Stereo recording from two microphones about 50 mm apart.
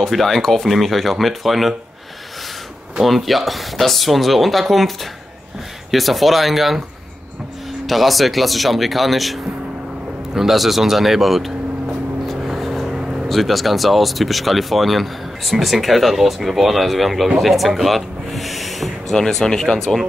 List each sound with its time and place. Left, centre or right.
0.0 s speech: centre
3.0 s speech: centre
7.8 s speech: centre
12.3 s vehicle: centre
13.3 s speech: centre
19.1 s speech: centre